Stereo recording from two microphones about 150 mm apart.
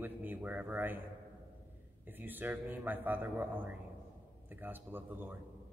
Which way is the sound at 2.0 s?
10° right (ahead or behind).